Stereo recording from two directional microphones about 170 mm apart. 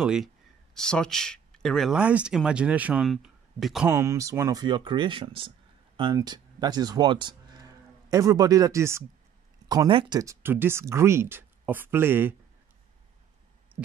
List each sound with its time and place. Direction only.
0.0 s speech: 5° right (ahead or behind)
3.9 s speech: 15° right (ahead or behind)
9.7 s speech: 25° right (ahead or behind)